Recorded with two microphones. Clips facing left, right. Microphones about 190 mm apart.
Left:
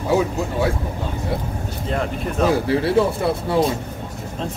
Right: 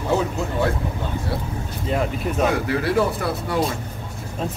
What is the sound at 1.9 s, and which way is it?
Speech, 5° right (ahead or behind).